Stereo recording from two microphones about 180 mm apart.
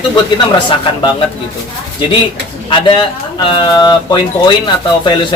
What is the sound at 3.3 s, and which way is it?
Speech, 25° left (ahead or behind).